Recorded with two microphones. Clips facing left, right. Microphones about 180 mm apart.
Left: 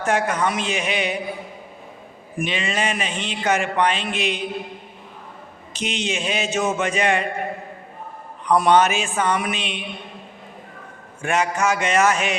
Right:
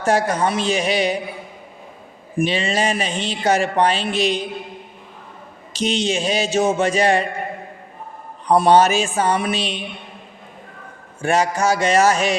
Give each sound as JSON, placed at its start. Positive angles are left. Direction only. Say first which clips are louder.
{"t": 0.0, "sound": "speech", "louder": "right 3 dB", "side_deg": -35}
{"t": 2.4, "sound": "speech", "louder": "right 5 dB", "side_deg": -35}
{"t": 5.7, "sound": "speech", "louder": "right 6 dB", "side_deg": -35}
{"t": 8.4, "sound": "speech", "louder": "right 3 dB", "side_deg": -30}
{"t": 11.2, "sound": "speech", "louder": "right 3 dB", "side_deg": -35}